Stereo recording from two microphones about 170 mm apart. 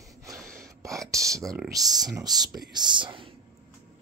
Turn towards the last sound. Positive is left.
turn(degrees=-30)  # may be behind; listen again after turning